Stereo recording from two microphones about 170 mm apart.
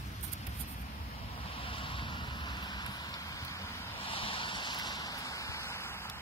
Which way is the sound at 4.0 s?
30° left (ahead or behind).